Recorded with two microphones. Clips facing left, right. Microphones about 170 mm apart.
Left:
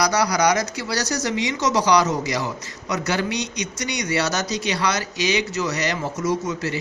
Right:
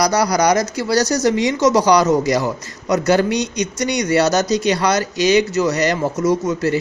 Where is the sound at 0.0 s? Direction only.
40° right (ahead or behind).